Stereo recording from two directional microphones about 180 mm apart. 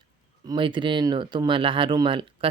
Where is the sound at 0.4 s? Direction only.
25° right (ahead or behind).